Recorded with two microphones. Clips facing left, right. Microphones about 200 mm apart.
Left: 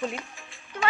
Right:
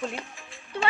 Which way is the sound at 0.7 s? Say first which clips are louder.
Even; 30° right (ahead or behind).